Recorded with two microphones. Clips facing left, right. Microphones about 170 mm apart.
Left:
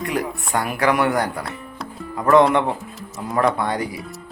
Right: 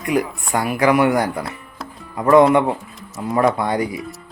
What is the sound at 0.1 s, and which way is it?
Speech, 10° right (ahead or behind).